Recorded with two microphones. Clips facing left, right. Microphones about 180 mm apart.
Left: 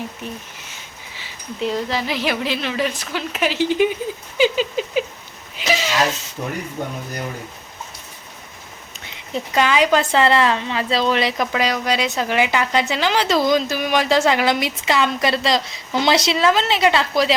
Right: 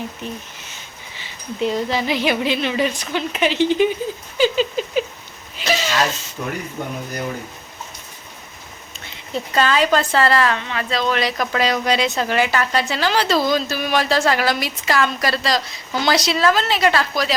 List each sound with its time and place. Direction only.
1.1 s speech: 5° left (ahead or behind)
4.4 s rodents: 15° left (ahead or behind)
5.5 s a sound: 15° left (ahead or behind)
6.4 s a woman's voice: 20° left (ahead or behind)
9.3 s a woman's voice: 15° left (ahead or behind)
11.5 s a woman's voice: 10° left (ahead or behind)